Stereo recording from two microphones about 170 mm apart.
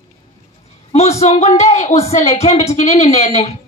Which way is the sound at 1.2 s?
40° left (ahead or behind).